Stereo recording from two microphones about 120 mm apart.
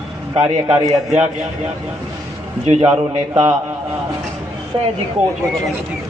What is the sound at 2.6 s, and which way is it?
Speech, 60° right (ahead or behind).